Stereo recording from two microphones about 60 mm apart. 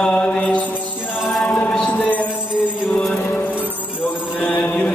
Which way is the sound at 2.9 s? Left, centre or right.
Centre.